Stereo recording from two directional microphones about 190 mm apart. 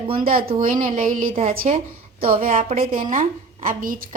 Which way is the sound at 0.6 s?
45° right (ahead or behind).